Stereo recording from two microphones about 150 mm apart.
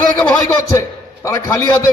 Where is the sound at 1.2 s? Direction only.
20° left (ahead or behind).